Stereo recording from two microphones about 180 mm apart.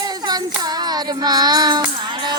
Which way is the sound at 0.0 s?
20° right (ahead or behind).